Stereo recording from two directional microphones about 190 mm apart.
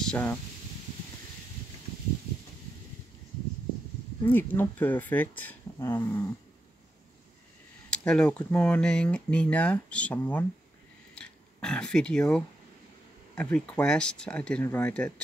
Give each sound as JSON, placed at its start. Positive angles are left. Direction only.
{"t": 0.0, "sound": "speech", "side_deg": 5}
{"t": 4.3, "sound": "speech", "side_deg": 10}
{"t": 7.9, "sound": "speech", "side_deg": 5}
{"t": 11.1, "sound": "a sound", "side_deg": 5}
{"t": 13.3, "sound": "speech", "side_deg": 5}